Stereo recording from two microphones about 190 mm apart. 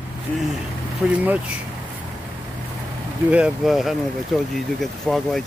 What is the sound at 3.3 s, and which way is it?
Speech, 5° right (ahead or behind).